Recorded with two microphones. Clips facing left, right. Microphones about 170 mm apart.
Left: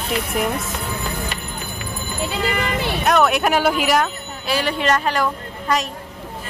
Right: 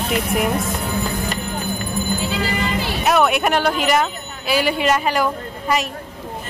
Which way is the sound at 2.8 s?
Centre (ahead or behind).